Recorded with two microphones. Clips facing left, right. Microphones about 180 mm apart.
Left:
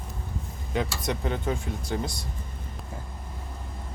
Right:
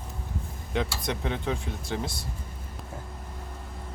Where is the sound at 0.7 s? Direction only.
Centre (ahead or behind).